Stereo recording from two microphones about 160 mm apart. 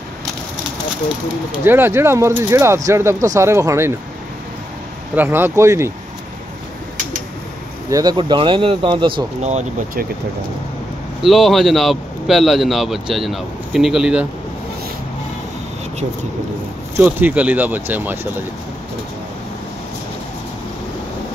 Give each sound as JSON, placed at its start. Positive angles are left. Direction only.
{"t": 1.6, "sound": "speech", "side_deg": -15}
{"t": 5.1, "sound": "speech", "side_deg": -10}
{"t": 7.9, "sound": "speech", "side_deg": -25}
{"t": 11.2, "sound": "a man's voice", "side_deg": 0}
{"t": 16.9, "sound": "speech", "side_deg": -10}